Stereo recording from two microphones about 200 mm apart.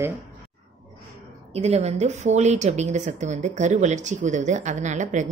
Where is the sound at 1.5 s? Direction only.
30° right (ahead or behind).